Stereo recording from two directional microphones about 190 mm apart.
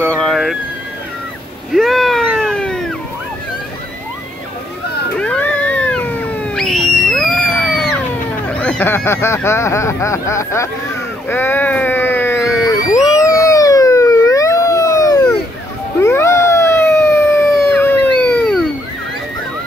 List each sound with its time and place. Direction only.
0.0 s a sound: 5° left (ahead or behind)
1.7 s cat: centre (ahead or behind)
5.2 s cat: 5° left (ahead or behind)
8.5 s speech: 5° left (ahead or behind)
11.2 s a sound: 10° left (ahead or behind)
16.0 s howl: 15° left (ahead or behind)